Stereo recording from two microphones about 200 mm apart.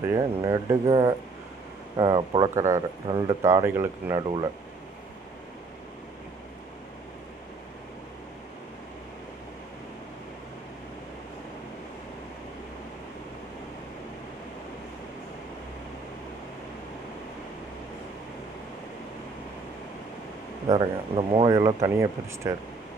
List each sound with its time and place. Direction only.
0.1 s speech: 15° right (ahead or behind)
20.7 s speech: 25° right (ahead or behind)